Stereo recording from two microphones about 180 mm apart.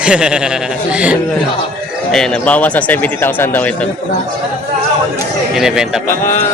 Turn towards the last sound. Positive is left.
turn(degrees=-5)  # may be behind; listen again after turning